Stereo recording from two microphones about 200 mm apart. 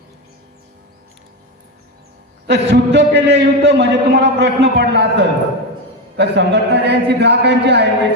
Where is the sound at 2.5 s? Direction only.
60° right (ahead or behind).